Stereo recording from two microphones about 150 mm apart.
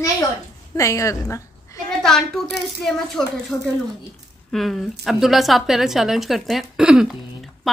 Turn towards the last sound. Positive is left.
turn(degrees=0)  # may be behind; listen again after turning